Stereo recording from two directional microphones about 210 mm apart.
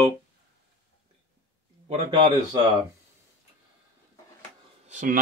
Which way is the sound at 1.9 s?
25° right (ahead or behind).